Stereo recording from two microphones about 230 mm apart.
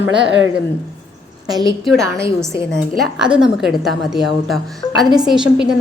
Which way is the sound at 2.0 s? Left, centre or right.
Centre.